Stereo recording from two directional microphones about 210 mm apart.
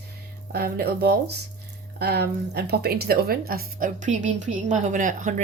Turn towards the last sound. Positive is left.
turn(degrees=-35)  # may be behind; listen again after turning